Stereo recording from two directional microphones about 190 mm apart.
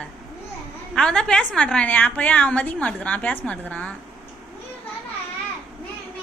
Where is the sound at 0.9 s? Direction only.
5° left (ahead or behind).